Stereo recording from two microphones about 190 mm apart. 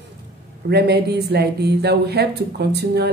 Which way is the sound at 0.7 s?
60° right (ahead or behind).